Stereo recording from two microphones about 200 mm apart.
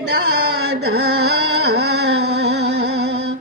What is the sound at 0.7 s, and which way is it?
Carnatic music, 55° right (ahead or behind).